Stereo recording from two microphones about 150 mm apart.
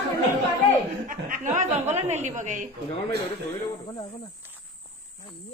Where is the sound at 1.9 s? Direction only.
50° right (ahead or behind).